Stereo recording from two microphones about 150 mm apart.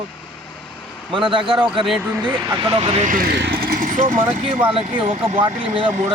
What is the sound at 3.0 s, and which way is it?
Speech, 70° right (ahead or behind).